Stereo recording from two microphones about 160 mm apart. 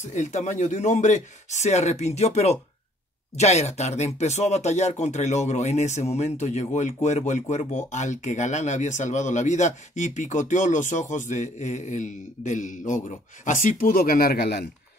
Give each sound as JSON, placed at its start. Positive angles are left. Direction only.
{"t": 0.1, "sound": "speech", "side_deg": 50}